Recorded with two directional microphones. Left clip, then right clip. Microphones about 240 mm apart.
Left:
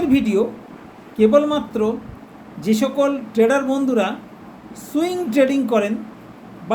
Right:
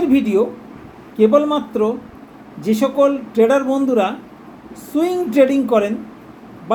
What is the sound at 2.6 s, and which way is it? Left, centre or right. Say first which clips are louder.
Speech: right 3 dB; centre.